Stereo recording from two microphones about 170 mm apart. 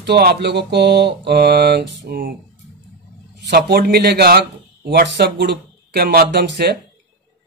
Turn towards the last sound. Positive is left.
turn(degrees=-80)